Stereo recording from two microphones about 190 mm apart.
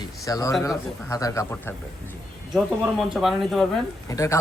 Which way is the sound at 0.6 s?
15° left (ahead or behind).